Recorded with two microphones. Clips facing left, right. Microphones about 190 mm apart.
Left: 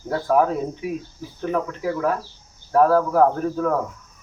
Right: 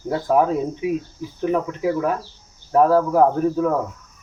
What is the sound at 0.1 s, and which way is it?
Speech, 15° right (ahead or behind).